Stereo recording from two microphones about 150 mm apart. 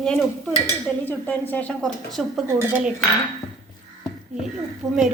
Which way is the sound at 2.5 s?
15° right (ahead or behind).